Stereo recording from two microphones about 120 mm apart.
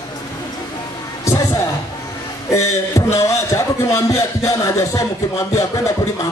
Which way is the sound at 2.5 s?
25° left (ahead or behind).